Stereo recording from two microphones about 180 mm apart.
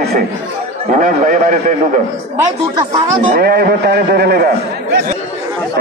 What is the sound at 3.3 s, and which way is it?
A man's voice, 55° right (ahead or behind).